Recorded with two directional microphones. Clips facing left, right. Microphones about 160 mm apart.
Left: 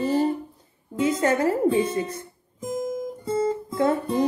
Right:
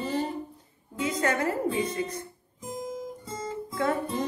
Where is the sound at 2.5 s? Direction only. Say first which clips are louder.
Left 7 dB; 40° left (ahead or behind).